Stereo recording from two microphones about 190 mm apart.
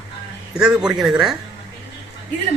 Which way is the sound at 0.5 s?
5° right (ahead or behind).